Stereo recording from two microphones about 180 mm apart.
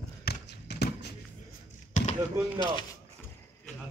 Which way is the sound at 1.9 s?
40° left (ahead or behind).